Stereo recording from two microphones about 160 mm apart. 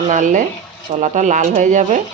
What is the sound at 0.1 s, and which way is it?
Speech, 55° right (ahead or behind).